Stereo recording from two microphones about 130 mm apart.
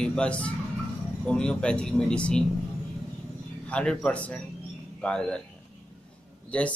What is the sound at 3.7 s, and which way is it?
Speech, 10° left (ahead or behind).